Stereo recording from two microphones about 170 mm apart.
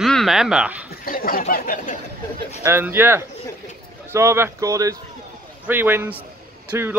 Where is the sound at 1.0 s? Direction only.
55° left (ahead or behind).